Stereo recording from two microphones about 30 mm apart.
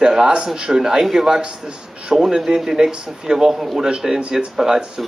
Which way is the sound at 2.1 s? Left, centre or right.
Centre.